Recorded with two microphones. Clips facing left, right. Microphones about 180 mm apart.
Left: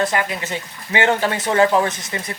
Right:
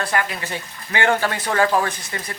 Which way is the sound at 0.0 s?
20° left (ahead or behind).